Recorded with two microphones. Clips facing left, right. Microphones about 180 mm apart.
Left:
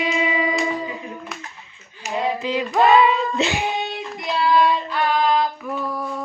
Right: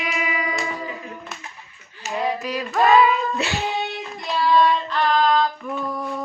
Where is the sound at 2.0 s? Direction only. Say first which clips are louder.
Left 2 dB; centre (ahead or behind).